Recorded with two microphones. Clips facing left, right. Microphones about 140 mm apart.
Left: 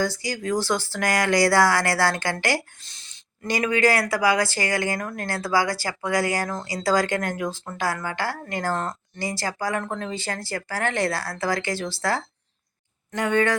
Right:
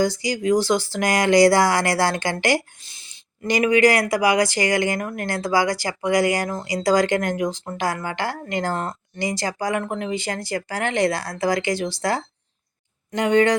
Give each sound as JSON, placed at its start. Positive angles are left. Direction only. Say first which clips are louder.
{"t": 0.0, "sound": "speech", "louder": "right 5 dB", "side_deg": -15}